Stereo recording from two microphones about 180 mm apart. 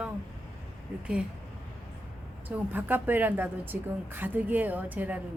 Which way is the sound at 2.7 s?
10° right (ahead or behind).